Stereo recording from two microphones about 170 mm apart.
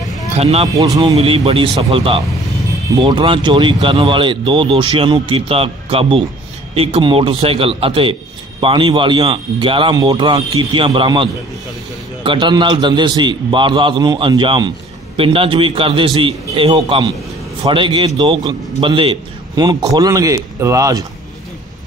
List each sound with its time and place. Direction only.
0.4 s a man's voice: 35° right (ahead or behind)
0.7 s a man's voice: 25° right (ahead or behind)
1.1 s a man's voice: 35° right (ahead or behind); by 21.0 s 20° right (ahead or behind)